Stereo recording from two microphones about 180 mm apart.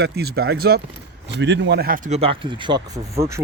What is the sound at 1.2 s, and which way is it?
Speech, 75° right (ahead or behind).